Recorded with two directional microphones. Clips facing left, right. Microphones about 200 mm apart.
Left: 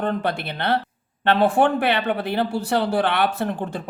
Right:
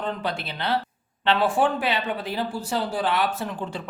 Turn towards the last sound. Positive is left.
turn(degrees=55)  # may be behind; listen again after turning